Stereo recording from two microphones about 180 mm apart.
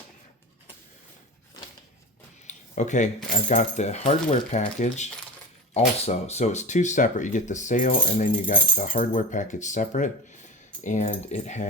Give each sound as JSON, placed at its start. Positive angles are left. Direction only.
{"t": 2.5, "sound": "a sound", "side_deg": 40}
{"t": 3.5, "sound": "speech", "side_deg": 40}
{"t": 6.1, "sound": "speech", "side_deg": 35}